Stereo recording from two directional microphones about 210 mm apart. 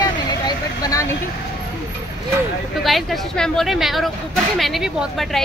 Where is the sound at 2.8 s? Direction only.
Centre (ahead or behind).